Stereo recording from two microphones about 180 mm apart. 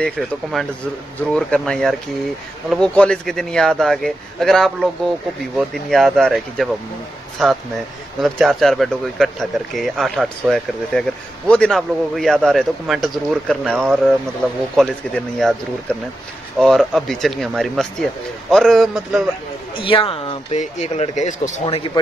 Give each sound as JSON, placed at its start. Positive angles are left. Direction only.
{"t": 0.0, "sound": "speech", "side_deg": 0}
{"t": 19.8, "sound": "speech", "side_deg": 30}